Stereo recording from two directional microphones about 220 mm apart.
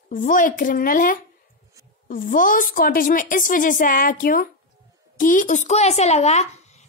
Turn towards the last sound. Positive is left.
turn(degrees=30)  # may be behind; listen again after turning